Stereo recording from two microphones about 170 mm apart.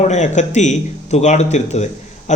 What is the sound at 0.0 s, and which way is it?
Speech, 45° left (ahead or behind).